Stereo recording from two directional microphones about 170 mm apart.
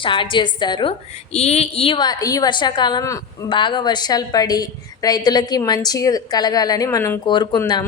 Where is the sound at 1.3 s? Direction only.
40° left (ahead or behind).